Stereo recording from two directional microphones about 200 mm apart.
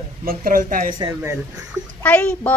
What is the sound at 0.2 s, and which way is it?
Speech, 45° right (ahead or behind).